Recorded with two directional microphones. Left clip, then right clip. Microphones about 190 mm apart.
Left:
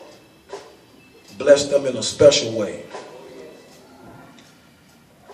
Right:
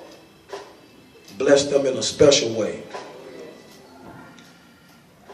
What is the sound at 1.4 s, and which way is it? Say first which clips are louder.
A man's voice: left 2 dB; 20° right (ahead or behind).